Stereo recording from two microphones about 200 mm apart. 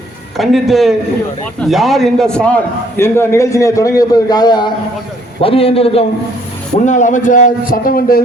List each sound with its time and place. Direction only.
0.3 s a man's voice: centre (ahead or behind); by 8.2 s 45° left (ahead or behind)